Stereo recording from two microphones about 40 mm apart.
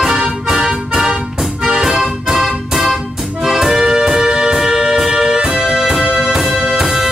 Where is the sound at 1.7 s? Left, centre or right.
Centre.